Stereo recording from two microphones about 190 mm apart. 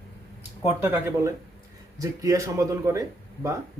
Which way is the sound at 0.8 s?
15° right (ahead or behind).